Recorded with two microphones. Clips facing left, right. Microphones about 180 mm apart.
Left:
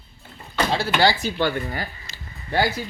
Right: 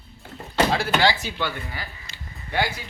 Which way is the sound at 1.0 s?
40° left (ahead or behind).